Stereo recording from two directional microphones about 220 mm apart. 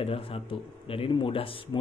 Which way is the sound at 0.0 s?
25° left (ahead or behind).